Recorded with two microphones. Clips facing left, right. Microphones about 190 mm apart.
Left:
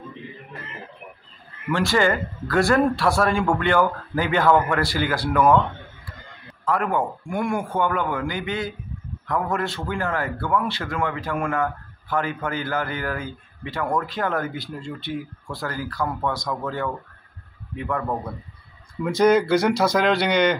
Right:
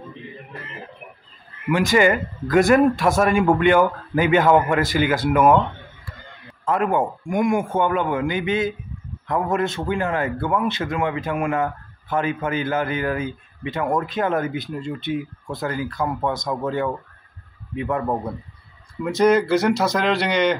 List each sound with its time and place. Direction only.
1.7 s a man's voice: 15° right (ahead or behind)
6.6 s a man's voice: 20° right (ahead or behind)
19.0 s speech: 5° right (ahead or behind)